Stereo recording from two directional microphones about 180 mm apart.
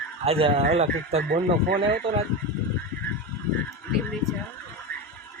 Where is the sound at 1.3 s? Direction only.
55° right (ahead or behind).